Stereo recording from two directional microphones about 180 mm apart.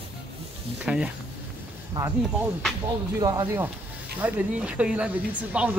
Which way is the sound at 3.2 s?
15° right (ahead or behind).